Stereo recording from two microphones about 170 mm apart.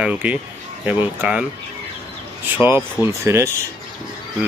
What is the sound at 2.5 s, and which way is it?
Speech, 15° right (ahead or behind).